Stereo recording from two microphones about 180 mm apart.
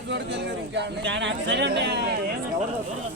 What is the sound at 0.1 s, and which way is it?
Speech, 75° right (ahead or behind).